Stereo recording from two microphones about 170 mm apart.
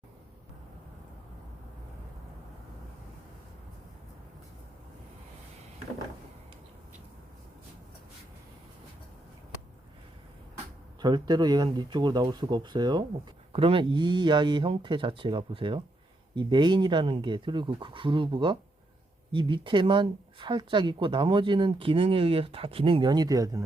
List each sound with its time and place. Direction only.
11.0 s speech: 25° right (ahead or behind)